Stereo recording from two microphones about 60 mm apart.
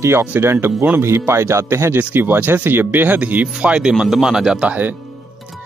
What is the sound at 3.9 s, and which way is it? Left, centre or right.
Speech, centre.